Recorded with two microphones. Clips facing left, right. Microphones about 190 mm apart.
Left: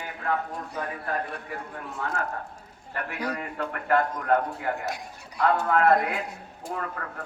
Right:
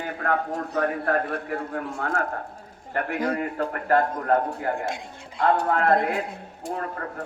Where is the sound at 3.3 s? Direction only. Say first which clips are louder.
Right 5 dB; 35° right (ahead or behind).